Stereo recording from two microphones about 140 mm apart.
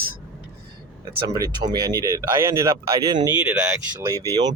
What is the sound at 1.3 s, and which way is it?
Speech, 30° right (ahead or behind).